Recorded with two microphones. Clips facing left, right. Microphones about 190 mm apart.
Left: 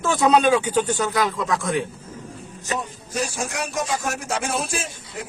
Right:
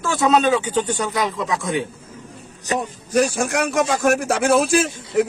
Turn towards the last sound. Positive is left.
turn(degrees=-70)  # may be behind; listen again after turning